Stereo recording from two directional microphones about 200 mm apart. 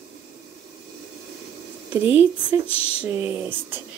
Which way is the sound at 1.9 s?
10° right (ahead or behind).